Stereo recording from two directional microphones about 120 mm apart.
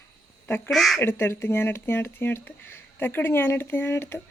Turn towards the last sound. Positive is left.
turn(degrees=20)  # may be behind; listen again after turning